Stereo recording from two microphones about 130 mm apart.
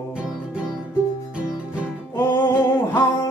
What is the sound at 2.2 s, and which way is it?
Music, 20° left (ahead or behind).